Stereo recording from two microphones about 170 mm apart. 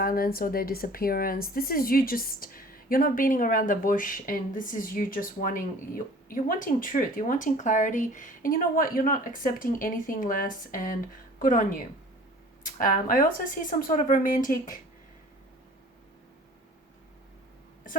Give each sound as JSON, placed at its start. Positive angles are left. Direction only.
{"t": 0.0, "sound": "a woman's voice", "side_deg": 60}